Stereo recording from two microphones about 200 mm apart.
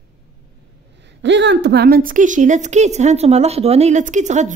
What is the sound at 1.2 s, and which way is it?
A woman's voice, 60° right (ahead or behind).